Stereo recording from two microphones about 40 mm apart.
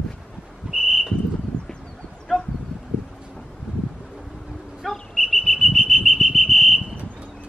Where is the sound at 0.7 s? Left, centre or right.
Right.